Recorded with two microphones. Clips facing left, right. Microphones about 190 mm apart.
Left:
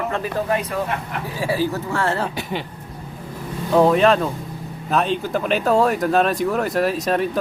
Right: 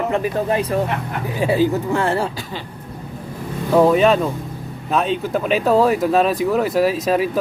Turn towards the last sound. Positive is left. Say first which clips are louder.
# right 2 dB
turn(degrees=0)  # may be behind; listen again after turning